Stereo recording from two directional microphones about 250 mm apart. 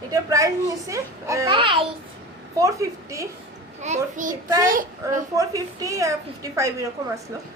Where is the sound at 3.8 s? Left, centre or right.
Right.